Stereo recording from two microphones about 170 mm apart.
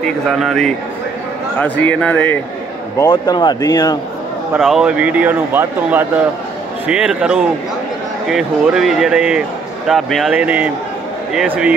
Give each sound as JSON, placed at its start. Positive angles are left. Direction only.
{"t": 0.0, "sound": "speech", "side_deg": 0}
{"t": 3.0, "sound": "a man's voice", "side_deg": 25}
{"t": 4.6, "sound": "speech", "side_deg": 0}